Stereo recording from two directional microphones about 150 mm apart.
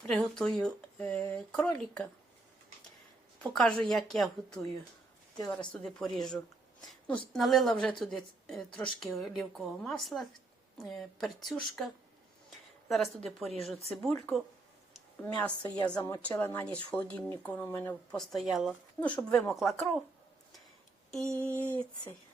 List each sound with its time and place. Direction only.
0.1 s a woman's voice: 5° left (ahead or behind)
3.3 s a woman's voice: 5° left (ahead or behind)
12.9 s a woman's voice: centre (ahead or behind)
13.4 s speech: 45° right (ahead or behind)
13.9 s a woman's voice: 5° left (ahead or behind)
18.2 s a woman's voice: centre (ahead or behind)
19.0 s a woman's voice: 20° left (ahead or behind)
19.3 s a woman's voice: centre (ahead or behind)
21.1 s speech: 5° left (ahead or behind)